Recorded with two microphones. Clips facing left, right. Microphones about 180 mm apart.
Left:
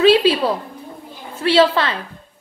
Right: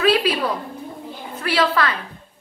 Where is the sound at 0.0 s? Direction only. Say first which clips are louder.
Left 5 dB; 25° left (ahead or behind).